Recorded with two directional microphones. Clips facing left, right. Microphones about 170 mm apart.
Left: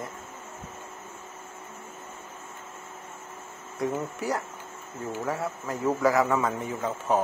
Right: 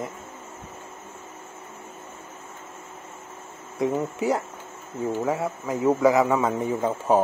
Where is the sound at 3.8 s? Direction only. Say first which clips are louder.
Right 5 dB; 20° right (ahead or behind).